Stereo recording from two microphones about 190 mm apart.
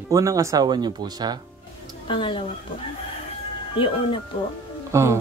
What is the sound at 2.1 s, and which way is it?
Speech, 25° left (ahead or behind).